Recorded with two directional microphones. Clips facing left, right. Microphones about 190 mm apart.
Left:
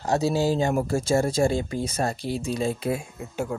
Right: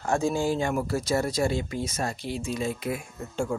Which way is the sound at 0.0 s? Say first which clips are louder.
Left 2 dB; 35° left (ahead or behind).